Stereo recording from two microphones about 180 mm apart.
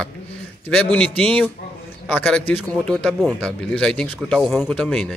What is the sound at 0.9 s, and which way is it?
A man's voice, 10° left (ahead or behind).